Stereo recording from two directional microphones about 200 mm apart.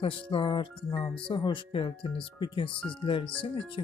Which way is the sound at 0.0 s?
25° left (ahead or behind).